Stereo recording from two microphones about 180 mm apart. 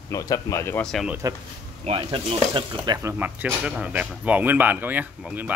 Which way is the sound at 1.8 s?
30° right (ahead or behind).